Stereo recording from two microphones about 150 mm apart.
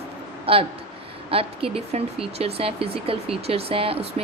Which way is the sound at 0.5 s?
40° right (ahead or behind).